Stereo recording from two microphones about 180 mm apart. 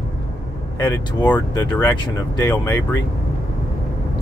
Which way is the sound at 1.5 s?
20° left (ahead or behind).